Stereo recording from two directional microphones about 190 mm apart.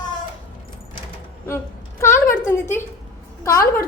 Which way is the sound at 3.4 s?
15° left (ahead or behind).